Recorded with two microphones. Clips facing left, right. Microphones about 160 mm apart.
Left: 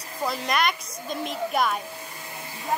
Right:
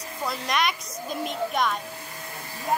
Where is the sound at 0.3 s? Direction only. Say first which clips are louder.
Left 1 dB; centre (ahead or behind).